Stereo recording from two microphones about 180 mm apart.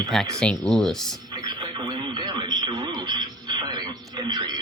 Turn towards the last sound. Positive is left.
turn(degrees=-25)  # may be behind; listen again after turning